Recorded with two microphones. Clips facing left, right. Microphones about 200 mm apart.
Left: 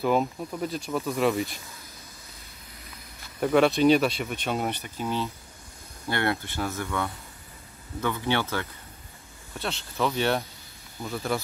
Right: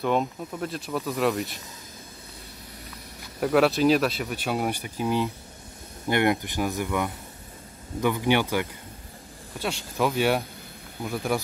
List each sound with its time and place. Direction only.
0.0 s speech: 5° left (ahead or behind)
3.3 s speech: 5° right (ahead or behind)